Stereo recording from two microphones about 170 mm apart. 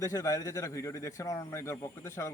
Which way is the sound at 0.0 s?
20° left (ahead or behind).